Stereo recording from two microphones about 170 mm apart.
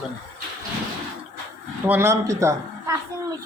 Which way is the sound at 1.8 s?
15° right (ahead or behind).